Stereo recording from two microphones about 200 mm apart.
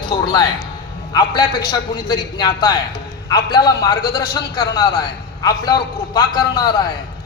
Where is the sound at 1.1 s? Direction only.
20° left (ahead or behind).